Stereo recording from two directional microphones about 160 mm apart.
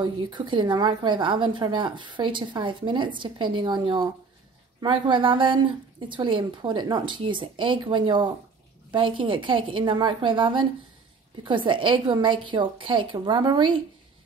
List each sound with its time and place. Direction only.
0.0 s a woman's voice: 30° right (ahead or behind)